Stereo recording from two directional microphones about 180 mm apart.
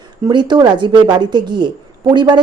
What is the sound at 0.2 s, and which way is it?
Speech, 25° right (ahead or behind).